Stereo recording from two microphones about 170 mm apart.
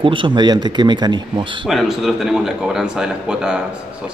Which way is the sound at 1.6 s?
Centre (ahead or behind).